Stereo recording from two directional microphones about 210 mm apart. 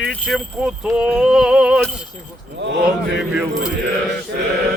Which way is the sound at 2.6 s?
55° right (ahead or behind).